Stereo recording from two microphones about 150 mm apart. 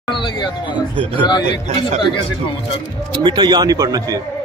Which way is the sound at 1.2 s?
30° left (ahead or behind).